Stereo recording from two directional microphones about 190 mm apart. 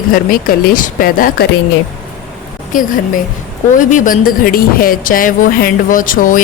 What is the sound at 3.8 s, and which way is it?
A woman's voice, 45° left (ahead or behind).